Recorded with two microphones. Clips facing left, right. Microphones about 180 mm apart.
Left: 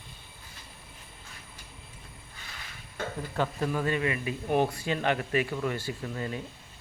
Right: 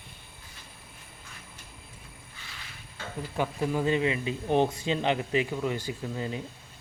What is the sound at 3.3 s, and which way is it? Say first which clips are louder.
Speech: right 2 dB; 15° right (ahead or behind).